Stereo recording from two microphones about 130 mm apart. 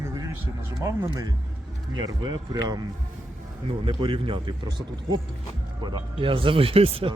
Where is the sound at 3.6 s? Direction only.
45° right (ahead or behind).